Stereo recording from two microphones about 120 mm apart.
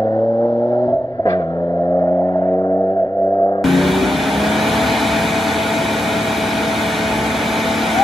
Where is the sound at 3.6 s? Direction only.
Centre (ahead or behind).